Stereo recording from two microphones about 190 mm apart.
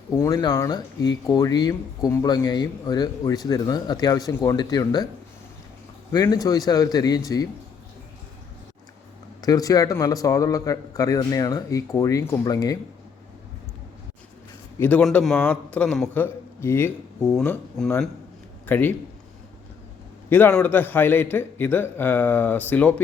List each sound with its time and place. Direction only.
0.2 s speech: 20° left (ahead or behind)
6.1 s speech: 15° left (ahead or behind)
9.4 s speech: 20° left (ahead or behind)
14.8 s a man's voice: 10° left (ahead or behind)
20.3 s a man's voice: 10° left (ahead or behind)